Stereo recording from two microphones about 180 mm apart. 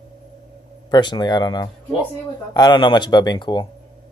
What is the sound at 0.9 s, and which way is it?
Speech, 25° left (ahead or behind).